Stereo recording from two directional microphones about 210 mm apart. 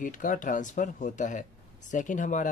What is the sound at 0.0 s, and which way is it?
Speech, 40° left (ahead or behind).